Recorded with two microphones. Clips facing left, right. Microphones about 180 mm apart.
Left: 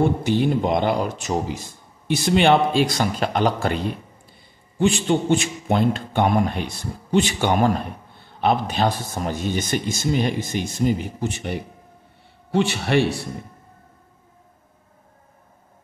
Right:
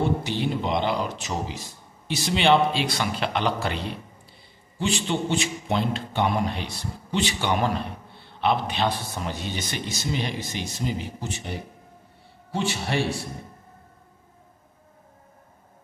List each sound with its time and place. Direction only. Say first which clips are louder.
0.0 s a man's voice: left 6 dB; 50° left (ahead or behind); by 13.0 s 65° left (ahead or behind)